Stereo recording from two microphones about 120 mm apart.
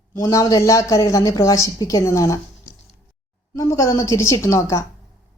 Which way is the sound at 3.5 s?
25° left (ahead or behind).